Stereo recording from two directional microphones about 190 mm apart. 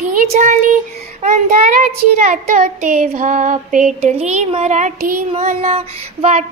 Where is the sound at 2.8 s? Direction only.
45° right (ahead or behind).